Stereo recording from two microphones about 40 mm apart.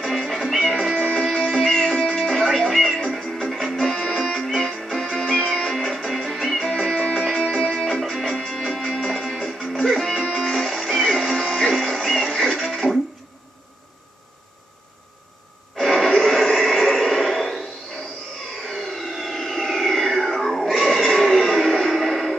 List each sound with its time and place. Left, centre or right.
0.0 s music: centre
5.5 s music: centre
6.7 s music: centre
15.8 s a sound: centre
18.7 s a sound: centre
20.3 s music: centre